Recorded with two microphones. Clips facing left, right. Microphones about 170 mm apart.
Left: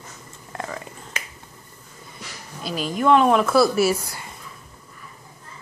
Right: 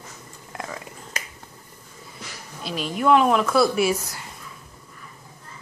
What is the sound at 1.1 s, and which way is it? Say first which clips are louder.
Finger snapping: even; 40° right (ahead or behind).